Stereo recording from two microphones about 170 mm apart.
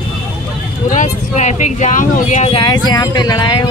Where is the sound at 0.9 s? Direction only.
45° left (ahead or behind).